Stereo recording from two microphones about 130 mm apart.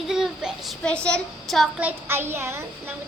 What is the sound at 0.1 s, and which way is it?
A child's voice, 5° right (ahead or behind).